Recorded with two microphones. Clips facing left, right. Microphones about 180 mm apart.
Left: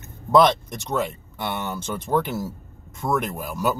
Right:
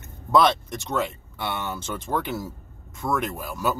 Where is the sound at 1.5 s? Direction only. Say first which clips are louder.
Left 2 dB; 15° left (ahead or behind).